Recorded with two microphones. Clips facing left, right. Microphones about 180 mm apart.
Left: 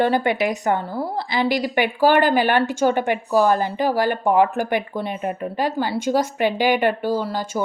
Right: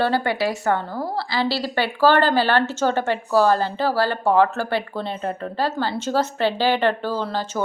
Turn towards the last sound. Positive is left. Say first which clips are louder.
# left 2 dB
turn(degrees=10)  # may be behind; listen again after turning